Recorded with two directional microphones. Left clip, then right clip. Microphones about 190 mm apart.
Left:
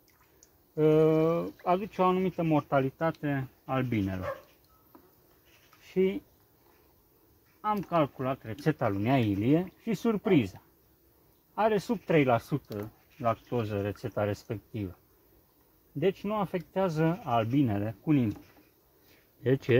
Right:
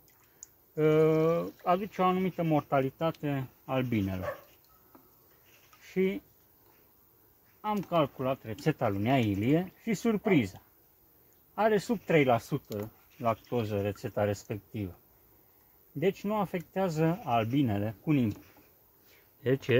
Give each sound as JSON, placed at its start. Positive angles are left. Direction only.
{"t": 0.7, "sound": "a sound", "side_deg": 25}
{"t": 1.6, "sound": "speech", "side_deg": 25}
{"t": 4.9, "sound": "a sound", "side_deg": 10}
{"t": 5.9, "sound": "speech", "side_deg": 25}
{"t": 7.6, "sound": "speech", "side_deg": 10}
{"t": 16.0, "sound": "speech", "side_deg": 20}
{"t": 19.4, "sound": "speech", "side_deg": 30}